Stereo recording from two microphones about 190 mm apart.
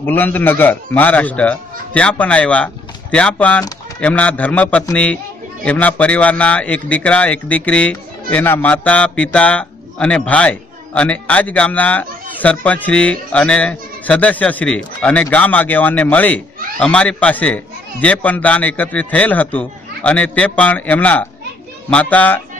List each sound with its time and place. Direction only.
0.0 s a man's voice: 10° left (ahead or behind)